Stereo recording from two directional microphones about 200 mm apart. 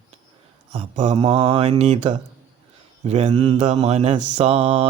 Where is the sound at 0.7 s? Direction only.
35° right (ahead or behind).